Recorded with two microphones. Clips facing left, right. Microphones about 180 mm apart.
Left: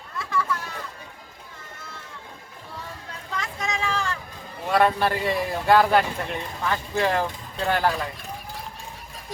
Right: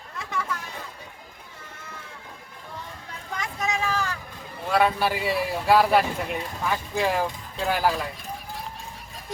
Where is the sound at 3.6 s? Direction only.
5° right (ahead or behind).